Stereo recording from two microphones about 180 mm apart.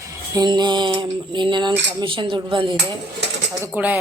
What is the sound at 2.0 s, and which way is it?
Speech, 25° right (ahead or behind).